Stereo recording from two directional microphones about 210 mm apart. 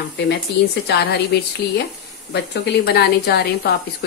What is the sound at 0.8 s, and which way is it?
Speech, 50° left (ahead or behind).